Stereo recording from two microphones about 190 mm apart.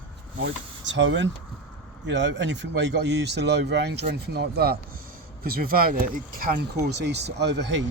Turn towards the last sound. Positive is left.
turn(degrees=-65)  # may be behind; listen again after turning